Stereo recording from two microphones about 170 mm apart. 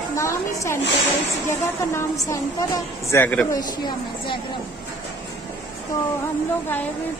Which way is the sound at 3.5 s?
25° left (ahead or behind).